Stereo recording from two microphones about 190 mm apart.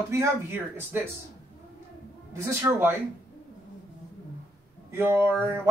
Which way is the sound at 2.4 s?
15° right (ahead or behind).